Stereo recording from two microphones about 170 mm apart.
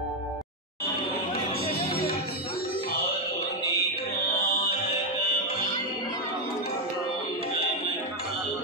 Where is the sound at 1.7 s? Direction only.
65° left (ahead or behind).